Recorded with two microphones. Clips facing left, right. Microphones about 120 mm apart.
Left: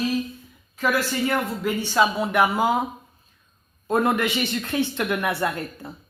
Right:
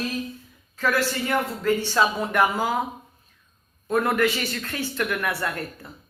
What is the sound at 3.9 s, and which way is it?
Speech, 25° left (ahead or behind).